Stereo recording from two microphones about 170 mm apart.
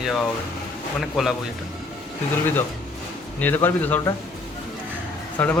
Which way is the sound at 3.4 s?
10° left (ahead or behind).